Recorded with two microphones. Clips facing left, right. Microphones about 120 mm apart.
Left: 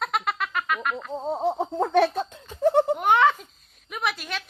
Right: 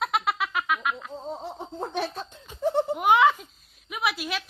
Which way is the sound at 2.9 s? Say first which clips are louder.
Even; 5° right (ahead or behind).